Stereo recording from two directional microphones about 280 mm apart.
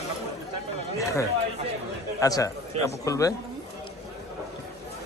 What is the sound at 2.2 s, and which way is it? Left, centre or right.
A man's voice, centre.